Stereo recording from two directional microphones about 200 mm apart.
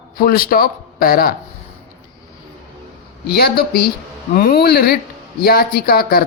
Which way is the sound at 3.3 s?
50° left (ahead or behind).